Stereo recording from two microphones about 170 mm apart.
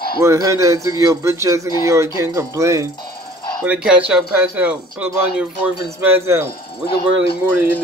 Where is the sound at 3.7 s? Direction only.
5° right (ahead or behind).